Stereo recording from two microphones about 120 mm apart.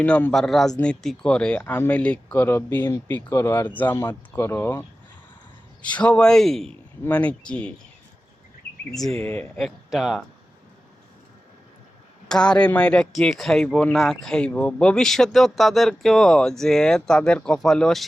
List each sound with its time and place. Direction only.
0.0 s speech: 10° left (ahead or behind)
8.9 s speech: 5° left (ahead or behind)
9.2 s speech: 15° left (ahead or behind)
9.6 s speech: centre (ahead or behind)
12.3 s speech: 5° left (ahead or behind)